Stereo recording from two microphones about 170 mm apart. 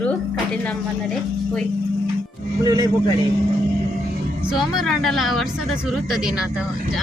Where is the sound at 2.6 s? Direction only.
20° right (ahead or behind).